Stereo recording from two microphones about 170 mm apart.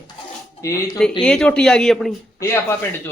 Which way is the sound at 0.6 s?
20° left (ahead or behind).